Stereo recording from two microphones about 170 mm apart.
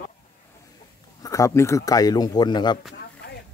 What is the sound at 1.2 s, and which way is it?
Speech, 20° left (ahead or behind).